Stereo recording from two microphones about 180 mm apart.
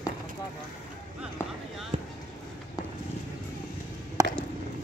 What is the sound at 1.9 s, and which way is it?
Basketball bounce, 40° right (ahead or behind).